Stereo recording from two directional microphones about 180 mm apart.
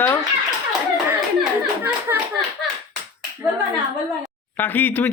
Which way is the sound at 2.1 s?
15° right (ahead or behind).